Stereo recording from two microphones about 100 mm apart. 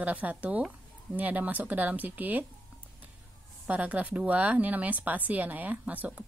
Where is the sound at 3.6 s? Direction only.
15° right (ahead or behind).